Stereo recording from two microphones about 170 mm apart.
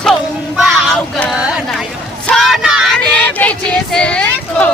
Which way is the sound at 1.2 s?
Centre (ahead or behind).